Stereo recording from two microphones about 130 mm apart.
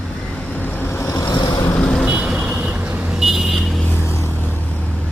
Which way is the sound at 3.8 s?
15° left (ahead or behind).